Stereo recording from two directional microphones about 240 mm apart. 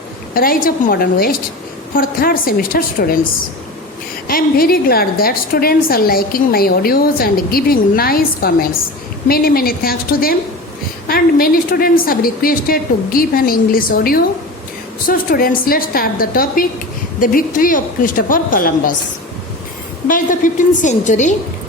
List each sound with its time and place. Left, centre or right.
0.3 s a woman's voice: left
4.3 s a woman's voice: left
20.1 s a woman's voice: left